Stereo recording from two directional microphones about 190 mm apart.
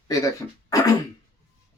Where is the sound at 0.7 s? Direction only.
20° left (ahead or behind).